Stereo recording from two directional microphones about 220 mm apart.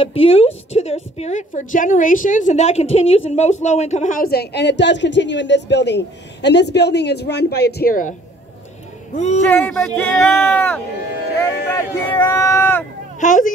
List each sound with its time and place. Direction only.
0.0 s a woman's voice: 25° left (ahead or behind)
9.1 s a woman's voice: 30° left (ahead or behind)
9.4 s speech: 10° left (ahead or behind)
13.2 s a woman's voice: 35° left (ahead or behind)